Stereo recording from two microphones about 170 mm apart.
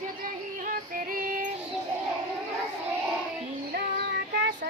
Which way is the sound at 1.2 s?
55° right (ahead or behind).